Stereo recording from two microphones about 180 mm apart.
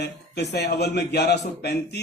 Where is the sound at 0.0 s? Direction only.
65° left (ahead or behind).